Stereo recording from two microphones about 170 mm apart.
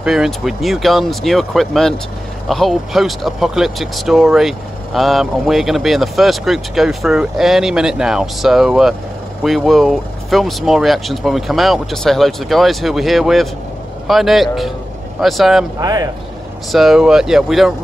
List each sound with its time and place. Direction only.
0.0 s speech: 5° right (ahead or behind)
15.8 s speech: 20° right (ahead or behind)
16.7 s speech: centre (ahead or behind)